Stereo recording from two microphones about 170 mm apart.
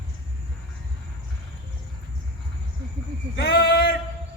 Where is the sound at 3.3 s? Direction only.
80° left.